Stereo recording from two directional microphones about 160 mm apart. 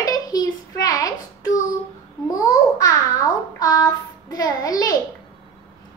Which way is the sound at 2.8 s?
20° left (ahead or behind).